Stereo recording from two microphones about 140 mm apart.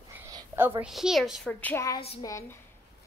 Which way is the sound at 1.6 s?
10° left (ahead or behind).